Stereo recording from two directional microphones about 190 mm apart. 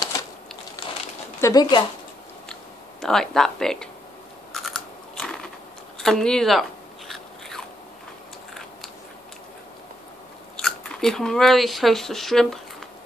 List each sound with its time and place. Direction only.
1.4 s speech: 20° left (ahead or behind)
3.0 s speech: 5° left (ahead or behind)
4.5 s biting: centre (ahead or behind)
5.9 s speech: centre (ahead or behind)
7.1 s biting: centre (ahead or behind)
10.6 s speech: centre (ahead or behind)